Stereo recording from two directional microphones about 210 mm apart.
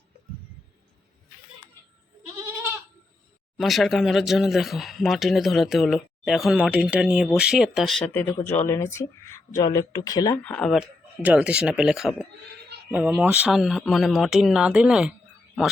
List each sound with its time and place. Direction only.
3.6 s speech: centre (ahead or behind); by 10.4 s 15° left (ahead or behind)
10.4 s speech: 5° left (ahead or behind)